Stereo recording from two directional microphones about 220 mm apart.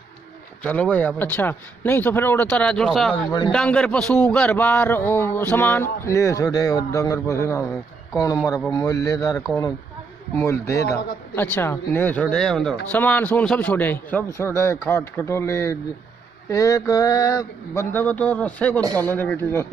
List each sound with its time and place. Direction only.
0.7 s speech: 5° left (ahead or behind)
8.7 s speech: 15° left (ahead or behind)